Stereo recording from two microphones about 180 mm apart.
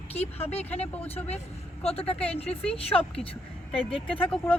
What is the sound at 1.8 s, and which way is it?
Speech, 35° left (ahead or behind).